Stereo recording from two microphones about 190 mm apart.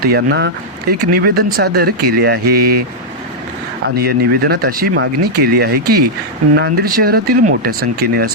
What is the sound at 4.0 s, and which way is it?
Speech, 55° right (ahead or behind).